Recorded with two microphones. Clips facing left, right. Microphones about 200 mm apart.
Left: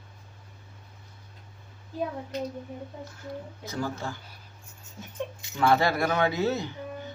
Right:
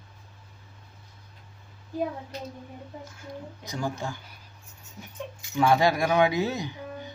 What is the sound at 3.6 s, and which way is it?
Speech, 15° right (ahead or behind).